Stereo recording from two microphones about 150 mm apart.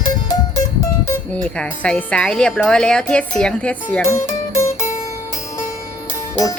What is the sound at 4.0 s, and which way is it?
Music, 20° left (ahead or behind).